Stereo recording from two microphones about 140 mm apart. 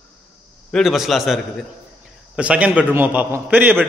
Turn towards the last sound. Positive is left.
turn(degrees=-10)  # may be behind; listen again after turning